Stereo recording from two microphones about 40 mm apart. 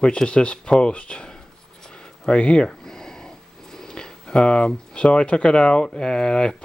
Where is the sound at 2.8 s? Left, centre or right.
Centre.